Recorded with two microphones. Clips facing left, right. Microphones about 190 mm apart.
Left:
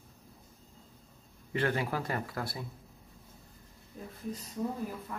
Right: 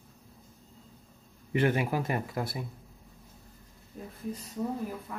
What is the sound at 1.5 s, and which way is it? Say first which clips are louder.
Speech: right 4 dB; 20° right (ahead or behind).